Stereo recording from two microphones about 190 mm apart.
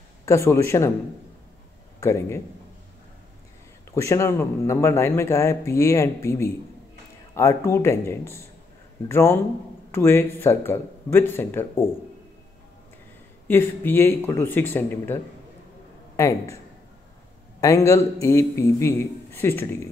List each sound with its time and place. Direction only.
0.2 s speech: 15° left (ahead or behind)
2.0 s speech: 15° left (ahead or behind)
3.9 s speech: 15° left (ahead or behind)
13.5 s speech: 10° left (ahead or behind)
16.2 s speech: 15° left (ahead or behind)
17.6 s speech: 15° left (ahead or behind)